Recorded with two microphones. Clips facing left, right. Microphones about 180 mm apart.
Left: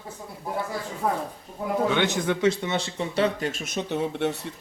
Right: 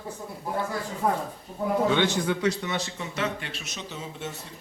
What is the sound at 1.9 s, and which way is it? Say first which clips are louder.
A man's voice: left 1 dB; 20° left (ahead or behind).